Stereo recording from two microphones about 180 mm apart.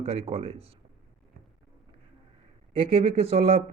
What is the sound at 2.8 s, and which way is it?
Speech, 35° right (ahead or behind).